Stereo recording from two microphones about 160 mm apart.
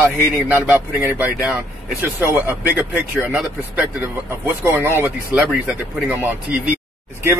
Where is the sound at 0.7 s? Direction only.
10° right (ahead or behind).